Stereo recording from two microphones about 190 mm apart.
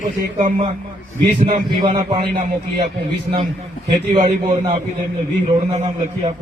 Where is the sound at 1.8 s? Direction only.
25° right (ahead or behind).